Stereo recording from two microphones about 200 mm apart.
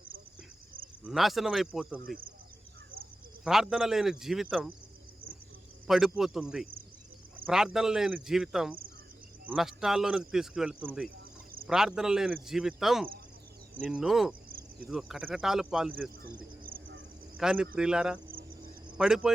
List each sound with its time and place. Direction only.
1.0 s speech: centre (ahead or behind)
3.4 s speech: centre (ahead or behind)
5.9 s speech: centre (ahead or behind)
16.6 s a sound: 45° right (ahead or behind)
17.3 s speech: 5° right (ahead or behind)